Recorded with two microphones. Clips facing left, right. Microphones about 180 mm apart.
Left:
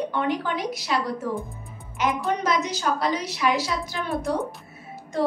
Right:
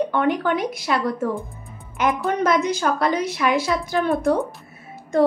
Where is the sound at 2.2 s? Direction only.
55° right (ahead or behind).